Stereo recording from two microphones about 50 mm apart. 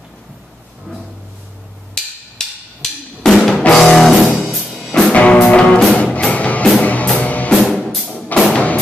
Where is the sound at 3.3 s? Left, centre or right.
Centre.